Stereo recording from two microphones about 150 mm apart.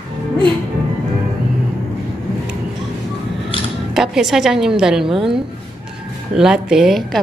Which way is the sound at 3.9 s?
5° right (ahead or behind).